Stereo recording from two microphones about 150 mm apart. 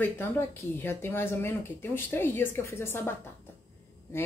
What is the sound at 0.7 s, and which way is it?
Speech, 15° left (ahead or behind).